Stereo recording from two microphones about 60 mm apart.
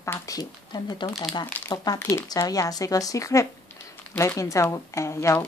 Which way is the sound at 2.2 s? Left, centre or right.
Left.